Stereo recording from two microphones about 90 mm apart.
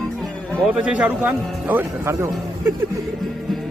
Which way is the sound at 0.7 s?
15° right (ahead or behind).